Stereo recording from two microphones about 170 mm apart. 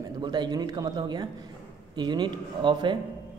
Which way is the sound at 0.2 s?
25° right (ahead or behind).